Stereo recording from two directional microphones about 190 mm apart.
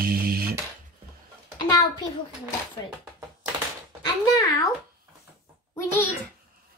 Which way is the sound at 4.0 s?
20° left (ahead or behind).